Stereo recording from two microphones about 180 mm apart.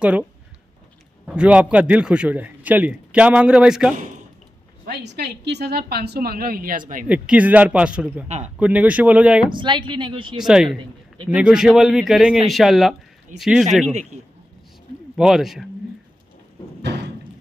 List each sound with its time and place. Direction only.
0.0 s a man's voice: 5° right (ahead or behind)
4.8 s a woman's voice: 70° right (ahead or behind)
7.1 s a man's voice: 5° right (ahead or behind)
9.5 s speech: 25° right (ahead or behind)
10.4 s speech: centre (ahead or behind)
15.1 s speech: centre (ahead or behind)
16.8 s thump: 65° right (ahead or behind)